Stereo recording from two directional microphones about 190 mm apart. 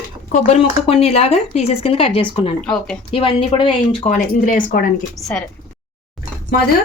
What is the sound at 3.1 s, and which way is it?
Speech, 25° left (ahead or behind).